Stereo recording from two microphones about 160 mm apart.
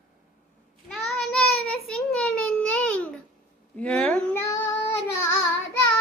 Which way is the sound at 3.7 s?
5° left (ahead or behind).